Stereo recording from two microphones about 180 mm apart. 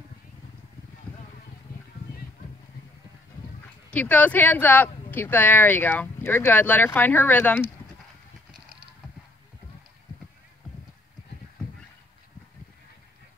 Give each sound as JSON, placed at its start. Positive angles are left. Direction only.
{"t": 3.9, "sound": "speech", "side_deg": 10}